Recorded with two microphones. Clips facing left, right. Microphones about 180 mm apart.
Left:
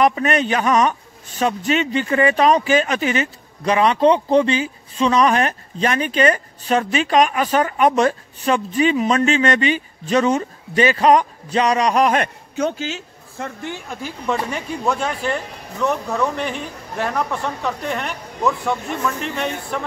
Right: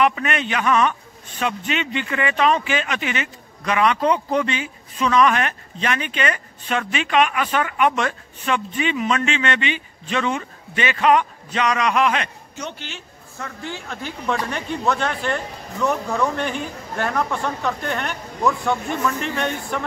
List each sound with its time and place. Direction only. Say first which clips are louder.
0.0 s speech: left 4 dB; 40° left (ahead or behind)
13.4 s speech: left 3 dB; 20° left (ahead or behind)
14.0 s speech: left 2 dB; 5° left (ahead or behind)